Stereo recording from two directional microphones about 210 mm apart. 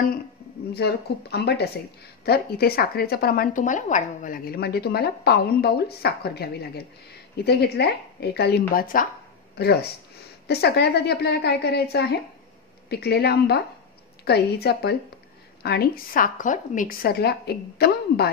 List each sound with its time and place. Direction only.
0.7 s speech: 50° left (ahead or behind)